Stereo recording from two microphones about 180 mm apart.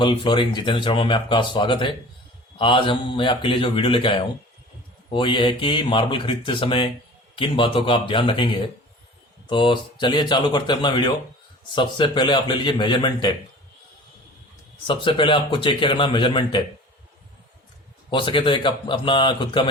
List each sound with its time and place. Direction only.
0.0 s speech: 25° left (ahead or behind)
14.8 s speech: 25° left (ahead or behind)
18.1 s speech: 30° left (ahead or behind)